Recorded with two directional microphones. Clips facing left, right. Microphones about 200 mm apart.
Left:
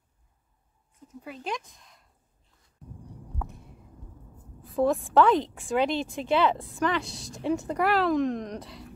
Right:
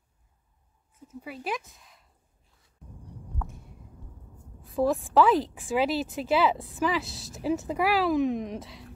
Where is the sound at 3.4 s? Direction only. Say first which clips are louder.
Left 1 dB; centre (ahead or behind).